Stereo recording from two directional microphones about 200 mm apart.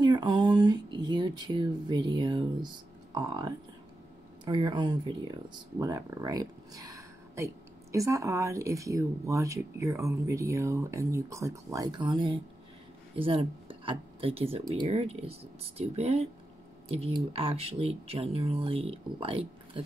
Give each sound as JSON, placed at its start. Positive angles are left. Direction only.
{"t": 0.0, "sound": "speech", "side_deg": -20}